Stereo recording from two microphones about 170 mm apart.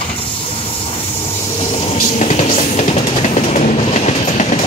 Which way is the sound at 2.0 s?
45° left (ahead or behind).